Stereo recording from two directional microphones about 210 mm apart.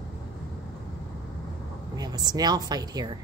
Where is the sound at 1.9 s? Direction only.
20° right (ahead or behind).